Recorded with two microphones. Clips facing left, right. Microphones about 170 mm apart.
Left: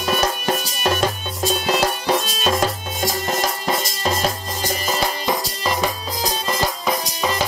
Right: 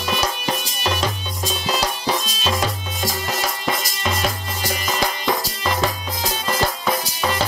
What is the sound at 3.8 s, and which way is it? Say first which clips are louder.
Music: left 2 dB; 35° left (ahead or behind).